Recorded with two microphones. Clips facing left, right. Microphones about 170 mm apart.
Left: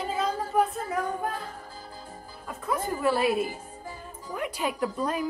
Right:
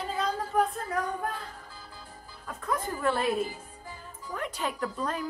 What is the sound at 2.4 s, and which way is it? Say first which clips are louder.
Speech: left 2 dB; 10° left (ahead or behind).